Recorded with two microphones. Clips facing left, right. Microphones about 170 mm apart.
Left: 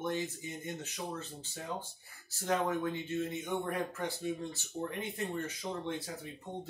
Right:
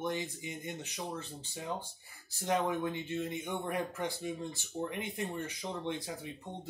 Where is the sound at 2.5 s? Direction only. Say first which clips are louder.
Even; 15° right (ahead or behind).